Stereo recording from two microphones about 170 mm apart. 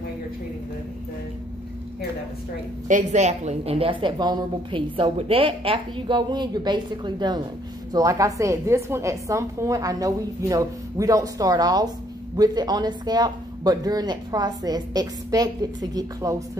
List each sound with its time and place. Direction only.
2.9 s a woman's voice: 40° right (ahead or behind); by 16.4 s 20° right (ahead or behind)